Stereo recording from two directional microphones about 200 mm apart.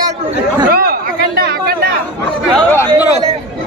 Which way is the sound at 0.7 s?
50° right (ahead or behind).